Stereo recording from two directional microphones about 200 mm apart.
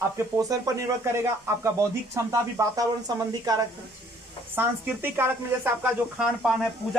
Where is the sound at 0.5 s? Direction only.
20° right (ahead or behind).